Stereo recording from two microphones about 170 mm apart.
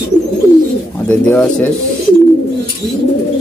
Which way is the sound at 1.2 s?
5° left (ahead or behind).